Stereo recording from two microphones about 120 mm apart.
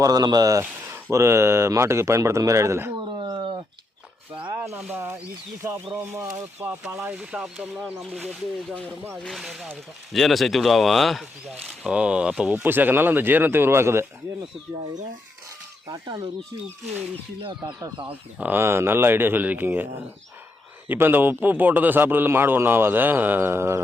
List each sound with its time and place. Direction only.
0.0 s speech: 35° right (ahead or behind)
0.6 s speech: 20° right (ahead or behind)
3.0 s a sound: 40° right (ahead or behind)
4.5 s a sound: 20° right (ahead or behind)
4.9 s a man's voice: 15° right (ahead or behind)
6.3 s a man's voice: 25° right (ahead or behind)
7.2 s a man's voice: 5° right (ahead or behind)
15.9 s speech: 35° right (ahead or behind)
17.9 s speech: 40° right (ahead or behind)
18.3 s a man's voice: 15° right (ahead or behind)